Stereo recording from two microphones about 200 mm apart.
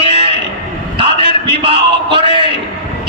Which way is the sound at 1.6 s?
25° right (ahead or behind).